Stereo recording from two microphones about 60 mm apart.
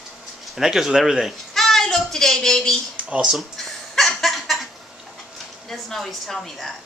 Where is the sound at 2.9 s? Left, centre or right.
Right.